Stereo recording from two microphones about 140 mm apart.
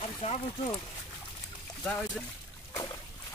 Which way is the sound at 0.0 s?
45° left (ahead or behind).